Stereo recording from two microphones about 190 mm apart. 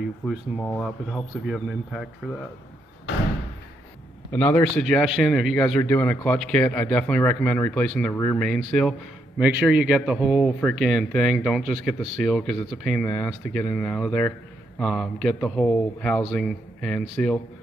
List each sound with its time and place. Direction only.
0.6 s a man's voice: 10° left (ahead or behind)
1.5 s speech: centre (ahead or behind)
4.3 s speech: 10° left (ahead or behind)
5.8 s a man's voice: 10° left (ahead or behind)
8.1 s a man's voice: 15° left (ahead or behind)
8.4 s speech: centre (ahead or behind)